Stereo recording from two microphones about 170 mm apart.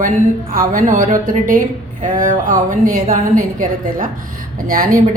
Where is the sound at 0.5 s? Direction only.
55° right (ahead or behind).